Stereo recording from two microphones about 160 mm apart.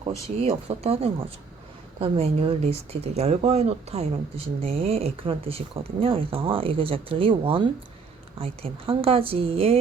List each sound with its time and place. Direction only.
0.0 s speech: 40° right (ahead or behind)